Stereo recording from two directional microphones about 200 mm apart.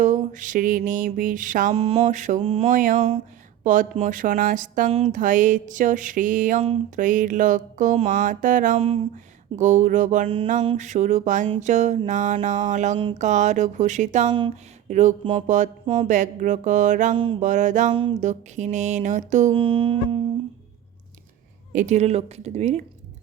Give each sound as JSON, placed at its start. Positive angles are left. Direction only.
{"t": 0.0, "sound": "speech", "side_deg": -40}
{"t": 14.3, "sound": "speech", "side_deg": -25}
{"t": 14.8, "sound": "speech", "side_deg": -35}
{"t": 21.7, "sound": "speech", "side_deg": -40}